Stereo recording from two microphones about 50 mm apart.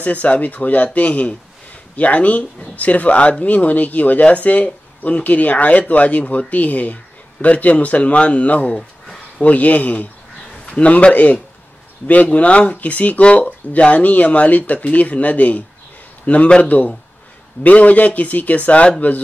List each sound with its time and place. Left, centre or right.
0.0 s speech: left